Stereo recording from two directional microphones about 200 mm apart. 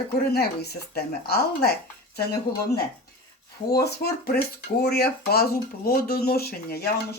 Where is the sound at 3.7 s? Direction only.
50° left (ahead or behind).